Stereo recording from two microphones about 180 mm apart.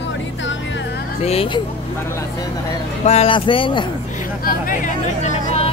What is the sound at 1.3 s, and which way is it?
Speech, 30° left (ahead or behind).